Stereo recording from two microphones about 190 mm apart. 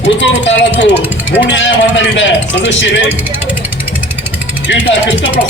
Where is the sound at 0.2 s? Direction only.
75° left (ahead or behind).